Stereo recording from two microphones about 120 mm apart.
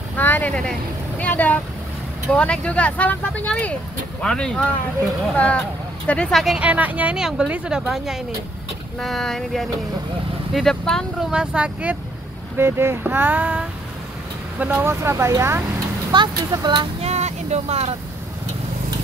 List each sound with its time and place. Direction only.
0.2 s speech: 15° left (ahead or behind); by 15.6 s 20° right (ahead or behind)
16.1 s speech: 40° right (ahead or behind)
17.0 s vehicle: 65° right (ahead or behind)